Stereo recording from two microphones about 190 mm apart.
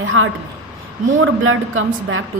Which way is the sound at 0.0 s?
90° right.